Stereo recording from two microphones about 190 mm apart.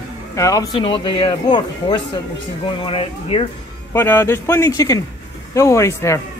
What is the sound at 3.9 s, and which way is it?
Speech, 10° left (ahead or behind).